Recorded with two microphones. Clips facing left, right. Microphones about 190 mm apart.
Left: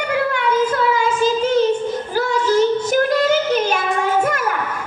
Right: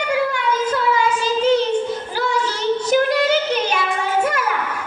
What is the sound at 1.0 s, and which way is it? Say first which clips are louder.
Child singing: left 2 dB; 45° left (ahead or behind).